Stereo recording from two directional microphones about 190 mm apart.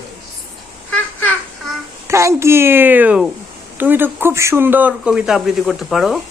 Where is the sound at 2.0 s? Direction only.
15° right (ahead or behind).